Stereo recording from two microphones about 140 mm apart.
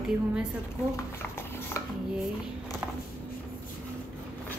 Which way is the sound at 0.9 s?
20° left (ahead or behind).